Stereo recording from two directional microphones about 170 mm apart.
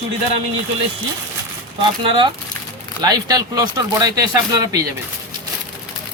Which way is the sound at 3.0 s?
25° right (ahead or behind).